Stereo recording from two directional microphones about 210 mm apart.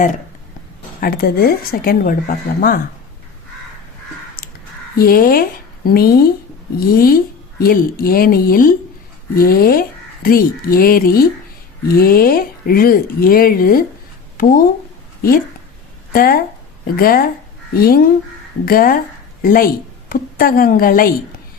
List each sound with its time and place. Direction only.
1.0 s speech: 45° left (ahead or behind)
4.4 s crow: 45° left (ahead or behind)
4.9 s speech: 45° left (ahead or behind)
16.1 s speech: 45° left (ahead or behind)